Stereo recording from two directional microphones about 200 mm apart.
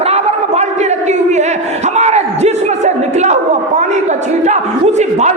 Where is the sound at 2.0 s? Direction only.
35° right (ahead or behind).